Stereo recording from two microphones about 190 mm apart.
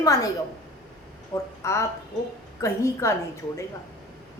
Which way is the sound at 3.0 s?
15° left (ahead or behind).